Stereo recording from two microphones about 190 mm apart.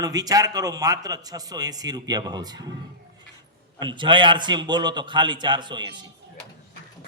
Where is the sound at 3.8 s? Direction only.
25° right (ahead or behind).